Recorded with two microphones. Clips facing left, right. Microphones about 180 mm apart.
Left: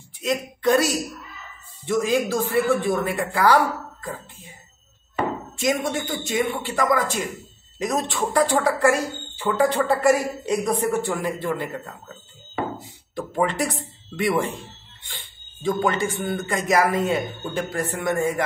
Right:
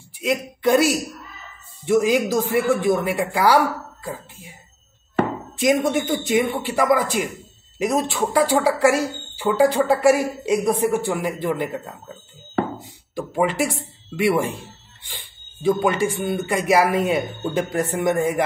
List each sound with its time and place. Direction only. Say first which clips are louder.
0.2 s speech: right 2 dB; 10° right (ahead or behind)
5.6 s speech: right 5 dB; 15° right (ahead or behind)
13.1 s speech: right 2 dB; 5° right (ahead or behind)